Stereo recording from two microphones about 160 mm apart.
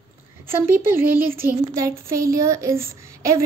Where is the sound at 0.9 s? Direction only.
15° right (ahead or behind).